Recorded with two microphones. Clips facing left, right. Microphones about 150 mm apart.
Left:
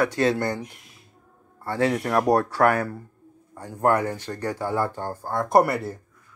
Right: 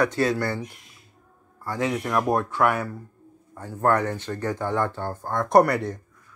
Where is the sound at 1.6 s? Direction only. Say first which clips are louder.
Left 3 dB; 30° left (ahead or behind).